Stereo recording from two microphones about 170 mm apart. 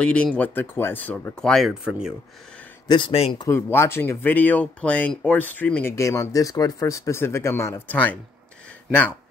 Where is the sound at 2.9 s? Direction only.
30° left (ahead or behind).